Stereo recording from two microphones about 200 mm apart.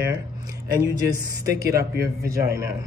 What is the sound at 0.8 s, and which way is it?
Speech, 15° right (ahead or behind).